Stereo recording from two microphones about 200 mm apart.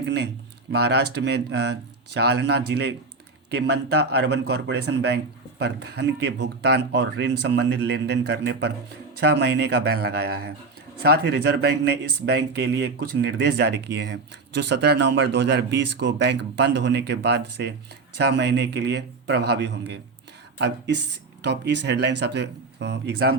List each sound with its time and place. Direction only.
0.0 s speech: 60° right (ahead or behind)